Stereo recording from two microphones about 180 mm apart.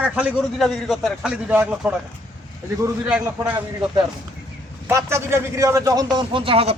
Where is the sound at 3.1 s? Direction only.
5° right (ahead or behind).